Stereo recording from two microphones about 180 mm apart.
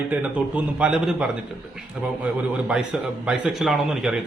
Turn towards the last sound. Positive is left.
turn(degrees=0)  # may be behind; listen again after turning